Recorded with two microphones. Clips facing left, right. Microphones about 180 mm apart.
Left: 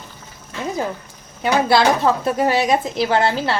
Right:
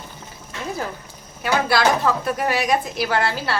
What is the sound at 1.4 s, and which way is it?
Speech, 25° left (ahead or behind).